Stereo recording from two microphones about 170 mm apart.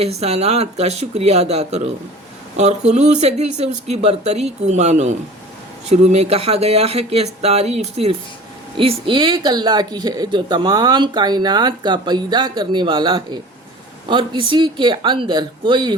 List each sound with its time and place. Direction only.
0.0 s speech: 35° right (ahead or behind)